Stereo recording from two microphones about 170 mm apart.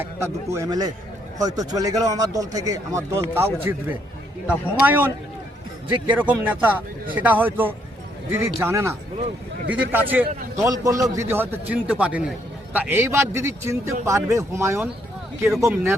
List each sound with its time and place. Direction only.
0.0 s a man's voice: 15° right (ahead or behind)
4.8 s a man's voice: 10° right (ahead or behind)